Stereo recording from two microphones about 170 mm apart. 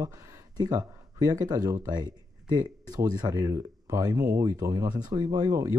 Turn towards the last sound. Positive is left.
turn(degrees=-20)  # may be behind; listen again after turning